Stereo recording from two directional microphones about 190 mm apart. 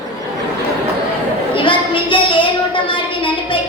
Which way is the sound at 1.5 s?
25° left (ahead or behind).